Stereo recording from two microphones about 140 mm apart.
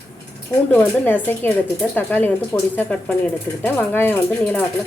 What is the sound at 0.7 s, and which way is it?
Speech, 15° left (ahead or behind).